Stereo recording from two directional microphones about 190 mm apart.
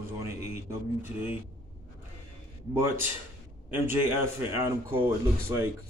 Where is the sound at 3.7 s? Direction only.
10° right (ahead or behind).